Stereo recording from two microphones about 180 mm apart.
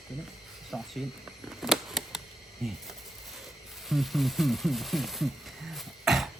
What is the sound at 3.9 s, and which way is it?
Speech, centre (ahead or behind).